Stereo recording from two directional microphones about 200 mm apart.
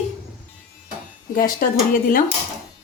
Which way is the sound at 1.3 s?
45° left (ahead or behind).